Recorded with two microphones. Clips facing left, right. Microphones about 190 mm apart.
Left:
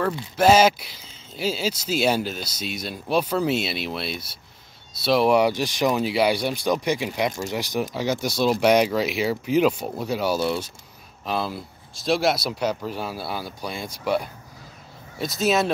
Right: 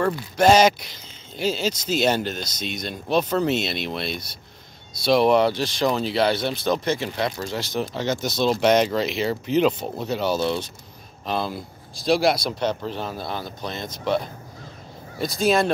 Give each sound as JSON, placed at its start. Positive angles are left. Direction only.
{"t": 0.4, "sound": "speech", "side_deg": 5}